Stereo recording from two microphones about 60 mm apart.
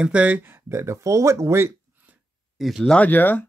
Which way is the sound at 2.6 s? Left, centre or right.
Centre.